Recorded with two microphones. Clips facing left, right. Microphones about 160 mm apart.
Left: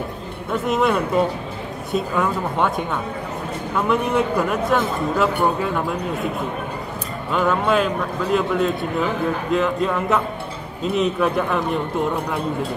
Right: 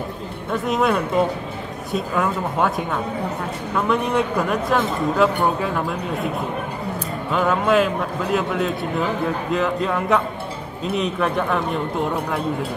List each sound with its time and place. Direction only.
0.5 s speech: centre (ahead or behind)
7.3 s speech: centre (ahead or behind)